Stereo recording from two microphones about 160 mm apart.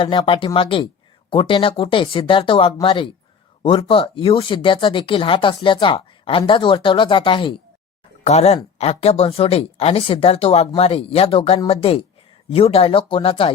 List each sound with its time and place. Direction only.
0.0 s speech: 35° left (ahead or behind)